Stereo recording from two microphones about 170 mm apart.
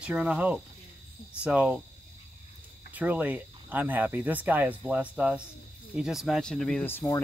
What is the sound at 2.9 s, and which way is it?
Speech, 10° right (ahead or behind).